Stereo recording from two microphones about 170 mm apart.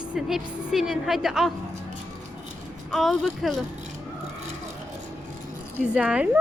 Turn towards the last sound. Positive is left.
turn(degrees=-5)  # may be behind; listen again after turning